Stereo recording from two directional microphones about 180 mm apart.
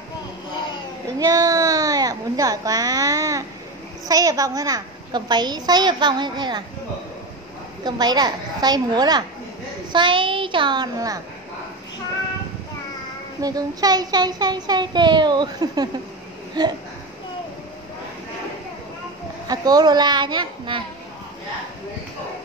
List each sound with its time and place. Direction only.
1.2 s a sound: 20° right (ahead or behind)
4.1 s a child's voice: 20° right (ahead or behind)
7.8 s a child's voice: 25° right (ahead or behind)
13.4 s a child's voice: 20° right (ahead or behind)
19.4 s a child's voice: 20° right (ahead or behind)